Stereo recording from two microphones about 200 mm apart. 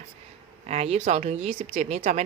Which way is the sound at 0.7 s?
30° right (ahead or behind).